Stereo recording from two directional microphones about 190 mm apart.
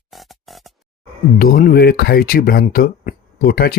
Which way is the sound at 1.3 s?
50° left (ahead or behind).